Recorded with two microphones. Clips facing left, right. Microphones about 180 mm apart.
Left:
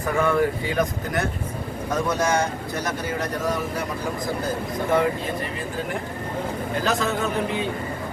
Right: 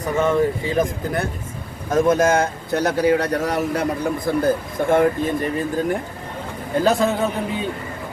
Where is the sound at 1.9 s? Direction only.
50° right (ahead or behind); by 3.8 s 70° right (ahead or behind).